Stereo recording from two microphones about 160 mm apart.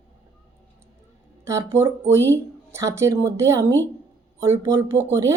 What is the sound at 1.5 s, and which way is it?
A woman's voice, 20° right (ahead or behind).